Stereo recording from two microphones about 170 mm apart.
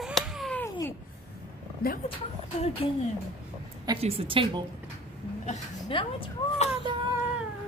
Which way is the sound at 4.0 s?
30° right (ahead or behind).